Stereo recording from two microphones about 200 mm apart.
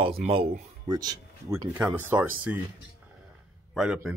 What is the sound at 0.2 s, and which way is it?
Speech, 25° right (ahead or behind).